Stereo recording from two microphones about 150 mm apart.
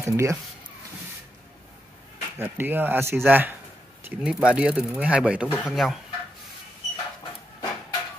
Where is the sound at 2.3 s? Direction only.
15° right (ahead or behind).